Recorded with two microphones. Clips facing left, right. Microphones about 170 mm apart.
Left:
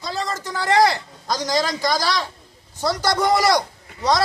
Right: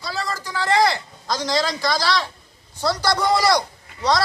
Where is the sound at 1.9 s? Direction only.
45° left (ahead or behind).